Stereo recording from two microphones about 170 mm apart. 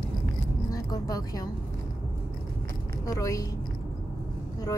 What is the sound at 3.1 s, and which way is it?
Speech, 20° left (ahead or behind).